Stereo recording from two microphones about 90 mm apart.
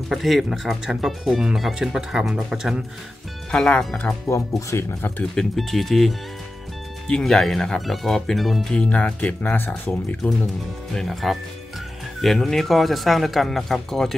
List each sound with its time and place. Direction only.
0.1 s speech: centre (ahead or behind)
3.5 s speech: 10° left (ahead or behind)
4.3 s speech: 35° left (ahead or behind)
5.3 s speech: 5° left (ahead or behind)
11.0 s speech: centre (ahead or behind)